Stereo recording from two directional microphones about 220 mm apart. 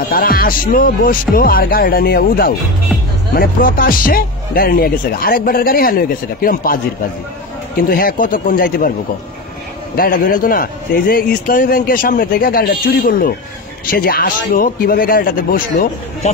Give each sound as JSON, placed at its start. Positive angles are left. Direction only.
{"t": 0.1, "sound": "speech", "side_deg": 40}
{"t": 9.9, "sound": "speech", "side_deg": 40}